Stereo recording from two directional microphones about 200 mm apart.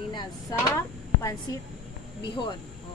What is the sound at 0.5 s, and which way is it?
Speech, 15° left (ahead or behind).